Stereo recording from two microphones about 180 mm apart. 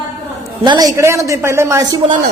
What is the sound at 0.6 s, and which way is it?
A woman's voice, 25° right (ahead or behind).